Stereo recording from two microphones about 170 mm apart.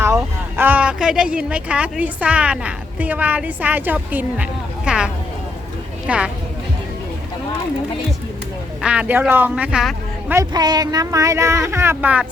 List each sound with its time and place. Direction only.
0.0 s speech: 15° right (ahead or behind)
8.8 s a man's voice: 5° right (ahead or behind)
10.3 s speech: 25° right (ahead or behind)